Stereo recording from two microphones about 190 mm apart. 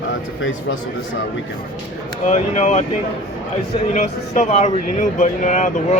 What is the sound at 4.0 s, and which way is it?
Speech, 40° left (ahead or behind).